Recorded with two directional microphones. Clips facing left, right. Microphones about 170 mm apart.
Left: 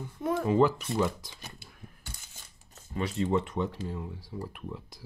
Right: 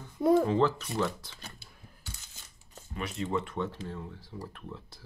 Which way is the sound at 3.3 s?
20° left (ahead or behind).